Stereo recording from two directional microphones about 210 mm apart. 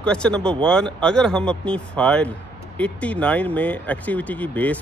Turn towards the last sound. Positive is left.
turn(degrees=5)  # may be behind; listen again after turning